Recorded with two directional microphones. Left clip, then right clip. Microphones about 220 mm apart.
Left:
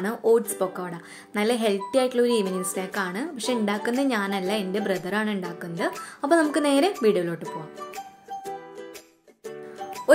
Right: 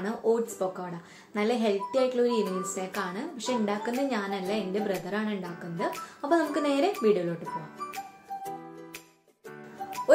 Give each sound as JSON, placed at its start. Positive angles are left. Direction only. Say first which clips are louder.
{"t": 0.0, "sound": "speech", "louder": "left 6 dB", "side_deg": 55}